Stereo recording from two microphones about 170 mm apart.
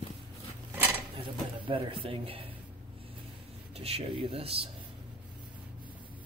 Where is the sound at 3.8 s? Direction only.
35° right (ahead or behind).